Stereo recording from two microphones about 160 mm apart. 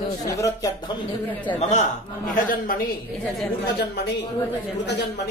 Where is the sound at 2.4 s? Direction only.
60° left (ahead or behind).